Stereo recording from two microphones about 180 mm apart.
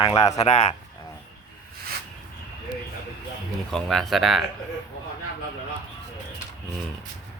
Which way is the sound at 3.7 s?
Centre (ahead or behind).